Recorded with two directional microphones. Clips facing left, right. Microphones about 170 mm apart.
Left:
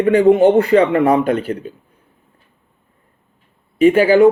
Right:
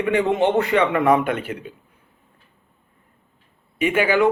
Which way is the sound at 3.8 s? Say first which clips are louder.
Left 8 dB; 35° left (ahead or behind).